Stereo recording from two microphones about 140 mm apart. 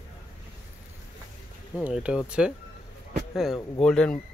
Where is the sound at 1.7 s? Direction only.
5° right (ahead or behind).